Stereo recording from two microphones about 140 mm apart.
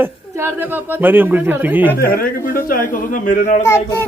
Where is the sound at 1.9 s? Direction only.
90° left; by 3.6 s 70° left (ahead or behind).